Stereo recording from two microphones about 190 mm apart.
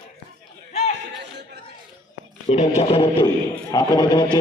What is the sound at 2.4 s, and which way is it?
Speech, 35° left (ahead or behind).